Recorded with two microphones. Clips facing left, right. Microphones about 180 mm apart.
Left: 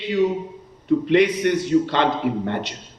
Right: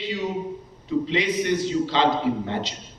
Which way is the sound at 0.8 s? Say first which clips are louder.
Left 7 dB; 60° left (ahead or behind).